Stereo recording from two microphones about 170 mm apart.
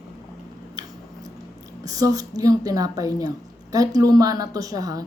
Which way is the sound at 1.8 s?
20° right (ahead or behind).